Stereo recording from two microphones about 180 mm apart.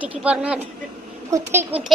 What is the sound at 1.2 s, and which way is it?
Speech, 15° right (ahead or behind).